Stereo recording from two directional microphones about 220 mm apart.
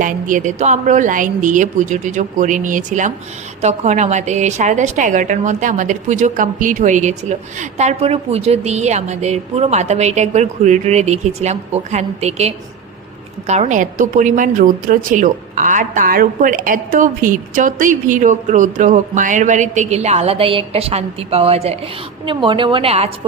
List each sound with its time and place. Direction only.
0.0 s a woman's voice: 35° right (ahead or behind)